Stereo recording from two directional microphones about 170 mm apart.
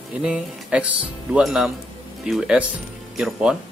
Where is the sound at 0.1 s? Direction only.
5° right (ahead or behind).